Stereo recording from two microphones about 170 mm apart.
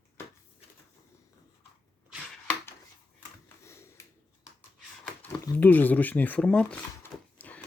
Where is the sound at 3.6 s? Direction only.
15° left (ahead or behind).